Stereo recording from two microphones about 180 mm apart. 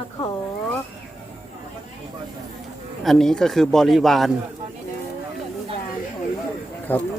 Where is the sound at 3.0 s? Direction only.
Centre (ahead or behind).